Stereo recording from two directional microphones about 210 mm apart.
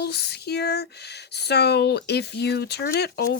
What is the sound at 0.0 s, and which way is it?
Speech, 50° left (ahead or behind).